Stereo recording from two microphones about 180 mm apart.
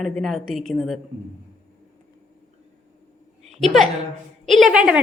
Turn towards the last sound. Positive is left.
turn(degrees=-5)  # may be behind; listen again after turning